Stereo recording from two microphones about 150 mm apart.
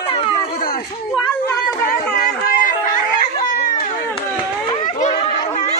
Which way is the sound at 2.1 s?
65° left (ahead or behind).